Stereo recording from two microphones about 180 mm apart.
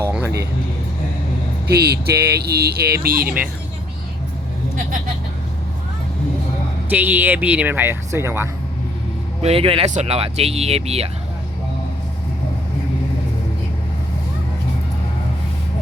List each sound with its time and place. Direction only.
0.0 s music: 10° right (ahead or behind)
1.6 s speech: 65° right (ahead or behind)
6.9 s speech: 10° right (ahead or behind)
9.4 s speech: 30° right (ahead or behind)